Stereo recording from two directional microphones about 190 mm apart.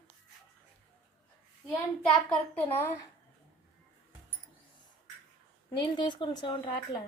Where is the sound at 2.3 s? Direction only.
10° left (ahead or behind).